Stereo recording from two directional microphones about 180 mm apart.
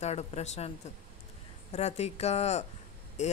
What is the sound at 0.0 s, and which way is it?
Speech, 35° left (ahead or behind).